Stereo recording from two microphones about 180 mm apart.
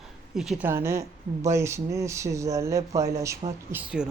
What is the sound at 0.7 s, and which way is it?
Speech, 15° right (ahead or behind).